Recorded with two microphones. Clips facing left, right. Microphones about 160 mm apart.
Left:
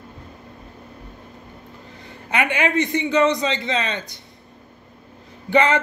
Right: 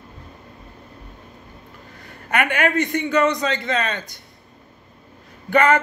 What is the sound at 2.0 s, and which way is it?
A man's voice, 20° left (ahead or behind).